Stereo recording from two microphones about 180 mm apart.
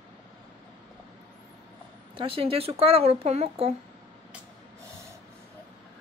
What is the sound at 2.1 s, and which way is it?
Speech, 30° right (ahead or behind).